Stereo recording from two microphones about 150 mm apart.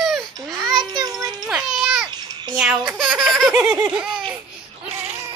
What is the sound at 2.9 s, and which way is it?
A child's voice, 5° right (ahead or behind).